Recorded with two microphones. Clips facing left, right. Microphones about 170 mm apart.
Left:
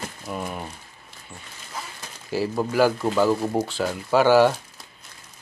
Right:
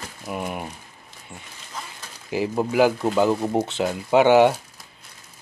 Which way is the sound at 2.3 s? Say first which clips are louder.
Right 1 dB; 15° right (ahead or behind).